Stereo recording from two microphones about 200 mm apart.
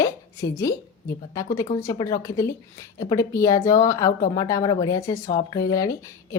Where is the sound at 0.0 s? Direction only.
15° left (ahead or behind).